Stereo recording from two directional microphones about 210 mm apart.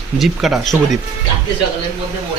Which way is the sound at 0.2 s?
Centre (ahead or behind).